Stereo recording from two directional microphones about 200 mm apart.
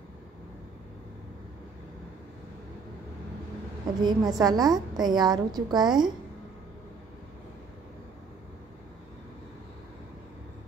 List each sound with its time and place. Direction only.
4.0 s a woman's voice: 20° right (ahead or behind)